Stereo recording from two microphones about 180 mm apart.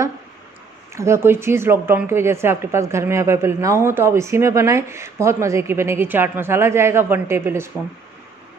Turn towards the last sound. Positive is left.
turn(degrees=-15)  # may be behind; listen again after turning